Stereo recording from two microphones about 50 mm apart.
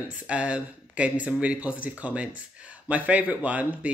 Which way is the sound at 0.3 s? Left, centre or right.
Right.